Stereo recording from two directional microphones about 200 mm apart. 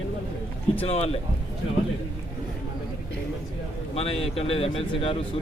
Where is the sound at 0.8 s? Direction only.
30° left (ahead or behind).